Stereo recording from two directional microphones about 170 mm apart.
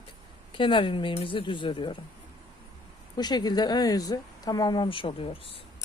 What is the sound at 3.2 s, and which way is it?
A man's voice, 25° left (ahead or behind).